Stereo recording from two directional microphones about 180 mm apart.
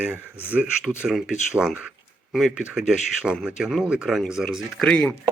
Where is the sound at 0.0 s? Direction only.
10° right (ahead or behind).